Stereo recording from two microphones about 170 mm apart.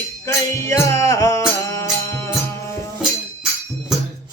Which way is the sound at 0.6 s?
15° left (ahead or behind).